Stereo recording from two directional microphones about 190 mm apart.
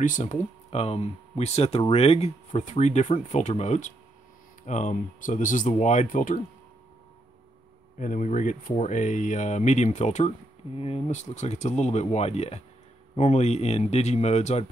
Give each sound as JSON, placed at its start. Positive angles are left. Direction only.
{"t": 0.0, "sound": "speech", "side_deg": 40}
{"t": 8.0, "sound": "speech", "side_deg": 40}